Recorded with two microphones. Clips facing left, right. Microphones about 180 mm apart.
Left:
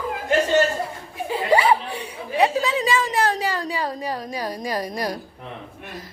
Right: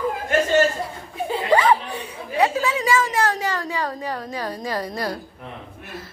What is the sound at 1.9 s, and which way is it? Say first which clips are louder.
Chatter: even; 30° left (ahead or behind).